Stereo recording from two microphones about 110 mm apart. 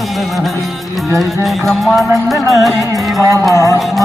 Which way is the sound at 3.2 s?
25° right (ahead or behind).